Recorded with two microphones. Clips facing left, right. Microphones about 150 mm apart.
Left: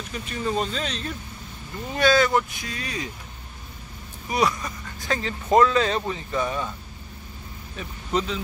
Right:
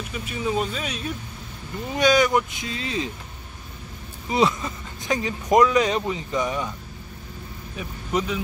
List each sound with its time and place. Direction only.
0.1 s speech: 5° right (ahead or behind); by 3.1 s 25° right (ahead or behind)
4.3 s speech: 25° right (ahead or behind)
7.7 s speech: 10° right (ahead or behind)